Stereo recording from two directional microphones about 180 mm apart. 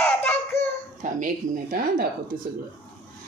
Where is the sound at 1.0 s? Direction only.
50° right (ahead or behind).